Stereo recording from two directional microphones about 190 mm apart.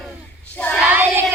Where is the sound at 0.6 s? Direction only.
5° left (ahead or behind).